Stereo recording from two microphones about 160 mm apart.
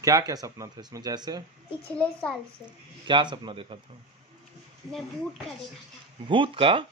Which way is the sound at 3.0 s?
30° right (ahead or behind).